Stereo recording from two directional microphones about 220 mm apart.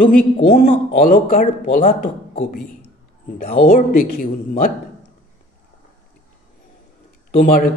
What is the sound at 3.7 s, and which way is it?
Speech, 40° left (ahead or behind).